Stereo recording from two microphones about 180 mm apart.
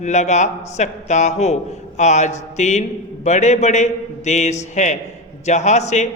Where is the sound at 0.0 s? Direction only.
40° left (ahead or behind).